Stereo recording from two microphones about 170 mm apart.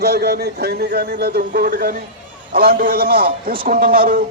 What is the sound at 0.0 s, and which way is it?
A man's voice, 70° right (ahead or behind).